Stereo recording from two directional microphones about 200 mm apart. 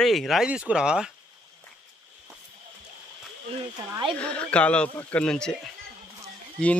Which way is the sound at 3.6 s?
25° right (ahead or behind).